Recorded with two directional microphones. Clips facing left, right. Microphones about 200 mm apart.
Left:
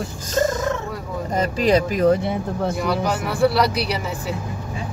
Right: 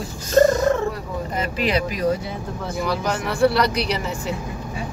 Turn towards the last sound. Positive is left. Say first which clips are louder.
# even
turn(degrees=5)  # may be behind; listen again after turning